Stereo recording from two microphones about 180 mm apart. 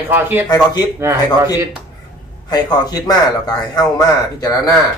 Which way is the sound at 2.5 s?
20° left (ahead or behind).